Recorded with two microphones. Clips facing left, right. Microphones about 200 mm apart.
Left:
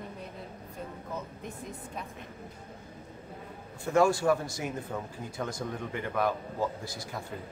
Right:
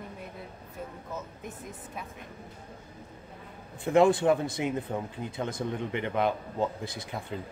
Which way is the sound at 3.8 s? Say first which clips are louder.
Right 3 dB; 20° right (ahead or behind).